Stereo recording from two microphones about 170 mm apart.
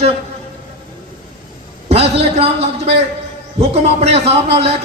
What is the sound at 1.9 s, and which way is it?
A man's voice, 35° right (ahead or behind).